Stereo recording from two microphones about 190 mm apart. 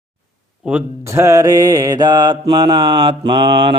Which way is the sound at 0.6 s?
10° right (ahead or behind).